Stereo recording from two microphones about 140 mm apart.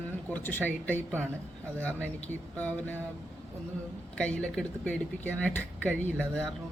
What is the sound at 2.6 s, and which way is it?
Speech, 10° left (ahead or behind).